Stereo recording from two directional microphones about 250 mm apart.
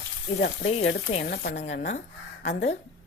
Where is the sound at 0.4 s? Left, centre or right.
Left.